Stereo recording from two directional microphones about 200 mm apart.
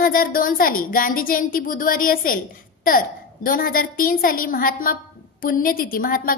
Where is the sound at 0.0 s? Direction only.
45° left (ahead or behind).